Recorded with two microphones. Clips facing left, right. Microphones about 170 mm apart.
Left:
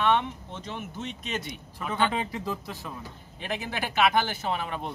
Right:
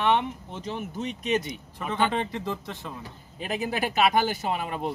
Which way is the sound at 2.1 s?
5° left (ahead or behind).